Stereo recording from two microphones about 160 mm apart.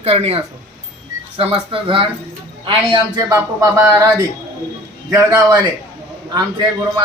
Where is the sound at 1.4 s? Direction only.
35° right (ahead or behind); by 4.1 s 20° right (ahead or behind).